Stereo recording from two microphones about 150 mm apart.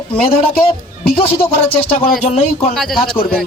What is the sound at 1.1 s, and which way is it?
Speech, 40° left (ahead or behind).